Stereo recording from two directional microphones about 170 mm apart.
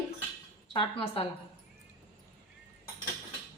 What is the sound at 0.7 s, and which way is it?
Speech, 30° left (ahead or behind).